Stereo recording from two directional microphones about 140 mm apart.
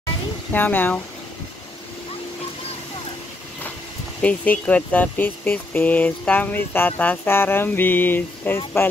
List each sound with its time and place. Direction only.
0.5 s speech: 15° left (ahead or behind)
4.2 s speech: 10° left (ahead or behind)